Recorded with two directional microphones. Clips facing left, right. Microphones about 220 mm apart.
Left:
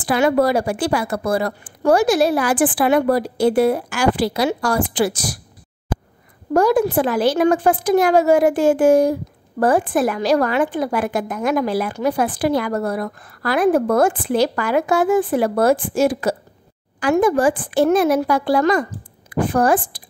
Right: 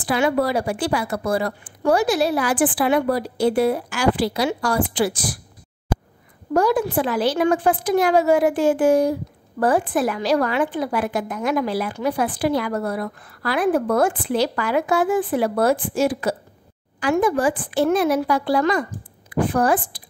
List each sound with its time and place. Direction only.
0.0 s a woman's voice: 45° left (ahead or behind)
6.5 s a woman's voice: 45° left (ahead or behind)